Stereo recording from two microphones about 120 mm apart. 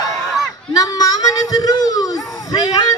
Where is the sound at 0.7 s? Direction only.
35° left (ahead or behind).